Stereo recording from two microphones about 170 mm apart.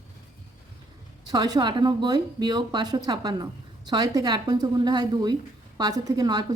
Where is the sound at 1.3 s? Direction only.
25° right (ahead or behind).